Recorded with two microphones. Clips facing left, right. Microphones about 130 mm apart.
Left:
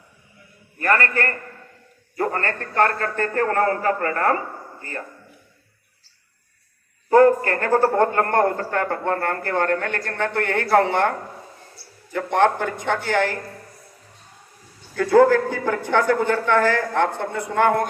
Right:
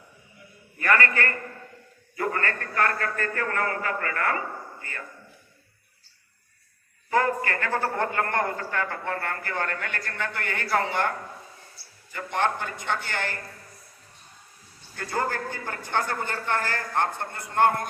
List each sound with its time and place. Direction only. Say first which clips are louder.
0.8 s a man's voice: left 3 dB; 35° left (ahead or behind)
7.1 s a man's voice: left 10 dB; 45° left (ahead or behind); by 11.1 s 65° left (ahead or behind)
12.1 s a man's voice: left 8 dB; 75° left (ahead or behind); by 13.4 s 90° left
14.9 s speech: left 14 dB; 90° left